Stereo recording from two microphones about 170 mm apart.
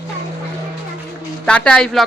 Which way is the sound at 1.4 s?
5° left (ahead or behind).